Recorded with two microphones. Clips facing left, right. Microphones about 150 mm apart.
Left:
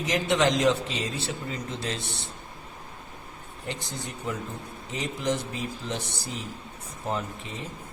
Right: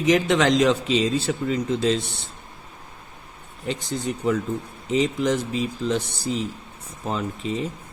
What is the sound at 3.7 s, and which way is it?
A man's voice, 90° right.